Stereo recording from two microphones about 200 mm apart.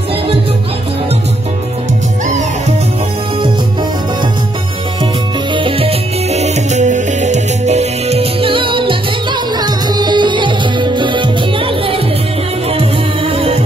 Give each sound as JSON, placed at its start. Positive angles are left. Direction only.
{"t": 5.5, "sound": "music", "side_deg": -25}